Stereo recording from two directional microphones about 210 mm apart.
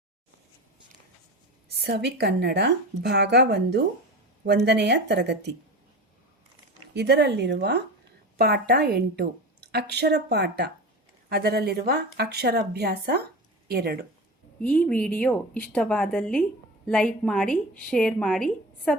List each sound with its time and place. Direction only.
1.8 s a woman's voice: 50° right (ahead or behind)
6.9 s a woman's voice: 55° right (ahead or behind)
14.6 s a woman's voice: 5° left (ahead or behind)